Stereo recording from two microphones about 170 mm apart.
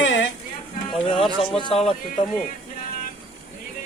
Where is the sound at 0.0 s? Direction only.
90° left.